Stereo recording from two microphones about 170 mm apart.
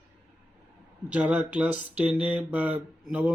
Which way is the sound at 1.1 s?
5° right (ahead or behind).